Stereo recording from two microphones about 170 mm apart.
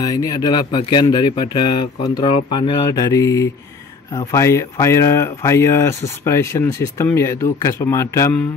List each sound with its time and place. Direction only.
0.0 s speech: 20° left (ahead or behind)